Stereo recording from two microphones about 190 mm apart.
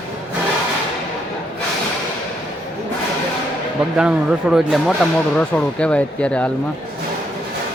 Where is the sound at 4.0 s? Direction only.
5° right (ahead or behind).